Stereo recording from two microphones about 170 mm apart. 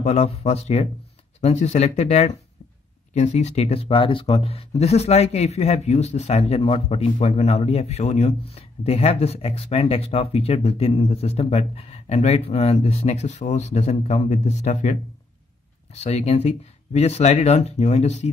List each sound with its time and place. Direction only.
0.0 s speech: 40° left (ahead or behind)